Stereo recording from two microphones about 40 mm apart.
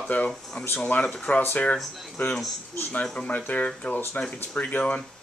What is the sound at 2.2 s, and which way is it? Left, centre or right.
Speech, left.